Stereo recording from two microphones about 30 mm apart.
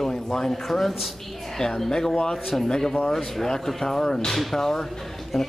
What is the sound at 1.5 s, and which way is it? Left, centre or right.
Speech, centre.